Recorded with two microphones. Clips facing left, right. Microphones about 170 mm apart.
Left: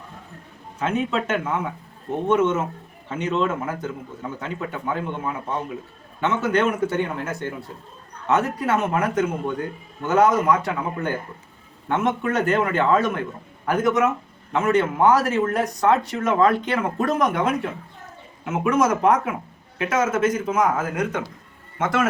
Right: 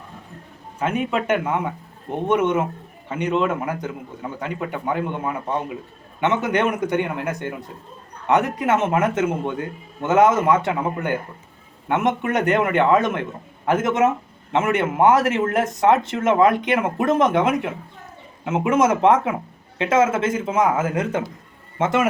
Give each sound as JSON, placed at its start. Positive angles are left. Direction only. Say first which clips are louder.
{"t": 0.9, "sound": "a man's voice", "louder": "right 2 dB", "side_deg": -10}